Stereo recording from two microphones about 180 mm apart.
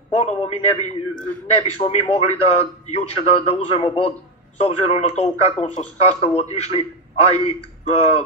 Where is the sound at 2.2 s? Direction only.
35° left (ahead or behind).